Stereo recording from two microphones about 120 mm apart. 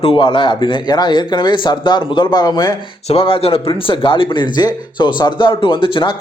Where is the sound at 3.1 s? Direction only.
55° left (ahead or behind).